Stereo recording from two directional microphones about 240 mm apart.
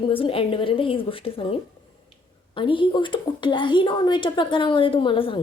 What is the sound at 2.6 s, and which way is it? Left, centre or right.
Speech, left.